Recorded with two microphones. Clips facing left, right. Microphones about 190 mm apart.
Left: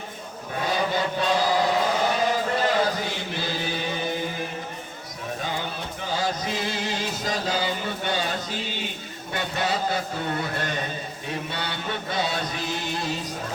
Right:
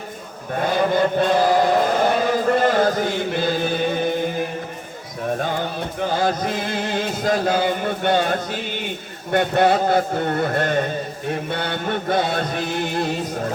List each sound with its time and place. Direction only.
0.5 s chant: 55° right (ahead or behind)
5.4 s music: 55° right (ahead or behind)
9.3 s a sound: 55° right (ahead or behind)